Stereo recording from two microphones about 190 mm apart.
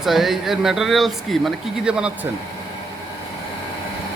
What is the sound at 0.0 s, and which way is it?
Speech, centre (ahead or behind).